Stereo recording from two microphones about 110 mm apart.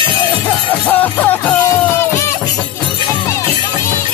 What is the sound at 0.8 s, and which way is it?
Music, 15° left (ahead or behind).